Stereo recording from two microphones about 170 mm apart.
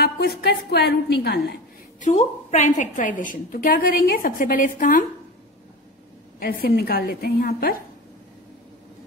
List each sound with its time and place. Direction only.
0.0 s a woman's voice: 70° left (ahead or behind)
2.0 s a woman's voice: 45° left (ahead or behind)
6.4 s a woman's voice: 60° left (ahead or behind)